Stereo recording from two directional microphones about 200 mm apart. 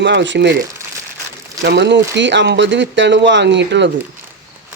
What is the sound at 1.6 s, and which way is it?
Speech, 60° right (ahead or behind).